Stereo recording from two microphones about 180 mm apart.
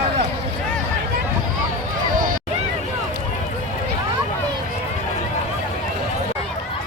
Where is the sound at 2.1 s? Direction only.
50° right (ahead or behind).